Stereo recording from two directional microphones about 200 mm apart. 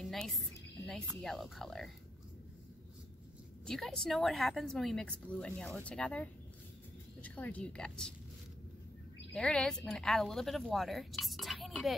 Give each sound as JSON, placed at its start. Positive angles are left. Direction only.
{"t": 0.0, "sound": "a woman's voice", "side_deg": 0}
{"t": 3.6, "sound": "speech", "side_deg": 0}
{"t": 9.3, "sound": "speech", "side_deg": 5}